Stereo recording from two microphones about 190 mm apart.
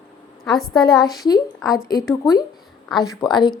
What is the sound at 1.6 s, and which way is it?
Speech, centre (ahead or behind).